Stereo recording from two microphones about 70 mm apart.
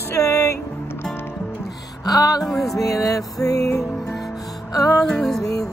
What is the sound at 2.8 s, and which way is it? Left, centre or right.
Speech, left.